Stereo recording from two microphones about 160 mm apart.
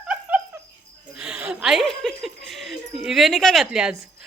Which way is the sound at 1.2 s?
5° right (ahead or behind).